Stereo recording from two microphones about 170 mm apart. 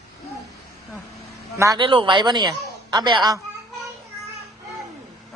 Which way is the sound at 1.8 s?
30° right (ahead or behind).